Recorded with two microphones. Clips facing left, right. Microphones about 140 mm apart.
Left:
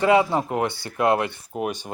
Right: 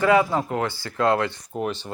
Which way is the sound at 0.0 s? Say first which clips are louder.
Left 1 dB; 20° left (ahead or behind).